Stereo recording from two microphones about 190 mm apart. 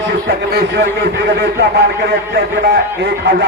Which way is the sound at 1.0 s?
65° right (ahead or behind).